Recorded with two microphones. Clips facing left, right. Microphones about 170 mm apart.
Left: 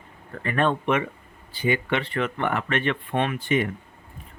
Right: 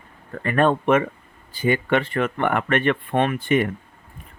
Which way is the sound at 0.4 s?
45° right (ahead or behind).